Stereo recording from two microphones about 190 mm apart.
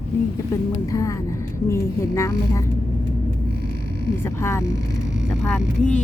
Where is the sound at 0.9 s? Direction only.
15° left (ahead or behind).